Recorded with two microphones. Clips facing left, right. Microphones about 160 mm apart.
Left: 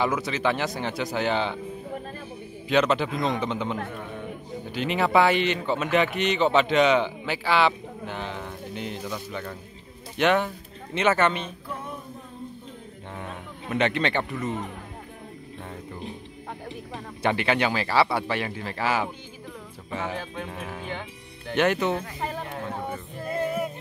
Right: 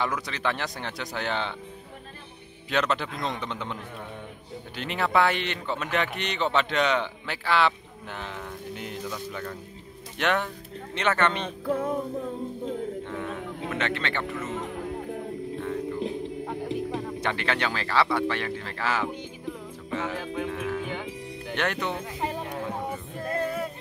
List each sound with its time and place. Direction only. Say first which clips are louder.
0.0 s speech: left 4 dB; 5° left (ahead or behind)
2.7 s speech: left 5 dB; centre (ahead or behind)
4.7 s a man's voice: left 3 dB; centre (ahead or behind)
11.6 s music: right 10 dB; 90° right
13.7 s a man's voice: left 7 dB; 20° left (ahead or behind)
17.2 s a man's voice: left 7 dB; 10° left (ahead or behind)
20.5 s speech: right 6 dB; 30° left (ahead or behind)
21.5 s speech: left 6 dB; 5° left (ahead or behind)
23.4 s a sound: left 5 dB; 15° left (ahead or behind)